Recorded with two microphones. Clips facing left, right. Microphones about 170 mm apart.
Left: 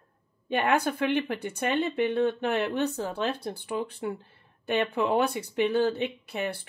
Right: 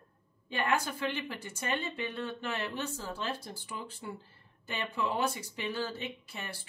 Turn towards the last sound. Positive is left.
turn(degrees=60)  # may be behind; listen again after turning